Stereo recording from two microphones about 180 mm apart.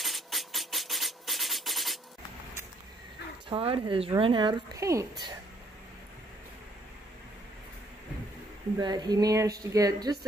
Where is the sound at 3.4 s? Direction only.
30° right (ahead or behind).